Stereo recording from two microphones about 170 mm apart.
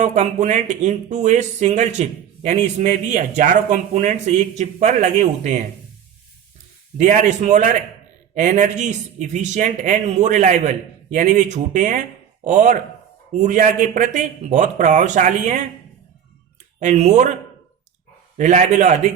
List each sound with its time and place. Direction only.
0.0 s speech: 45° right (ahead or behind)
7.0 s speech: 45° right (ahead or behind)
16.8 s speech: 40° right (ahead or behind)
18.3 s speech: 45° right (ahead or behind)